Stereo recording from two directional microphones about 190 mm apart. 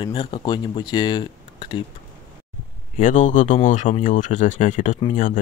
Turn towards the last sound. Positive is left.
turn(degrees=45)  # may be behind; listen again after turning